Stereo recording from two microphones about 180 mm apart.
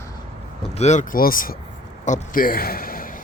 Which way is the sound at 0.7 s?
40° left (ahead or behind).